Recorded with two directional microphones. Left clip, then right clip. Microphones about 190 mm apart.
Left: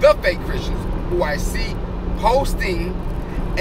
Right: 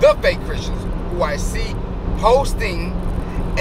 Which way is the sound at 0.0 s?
15° right (ahead or behind).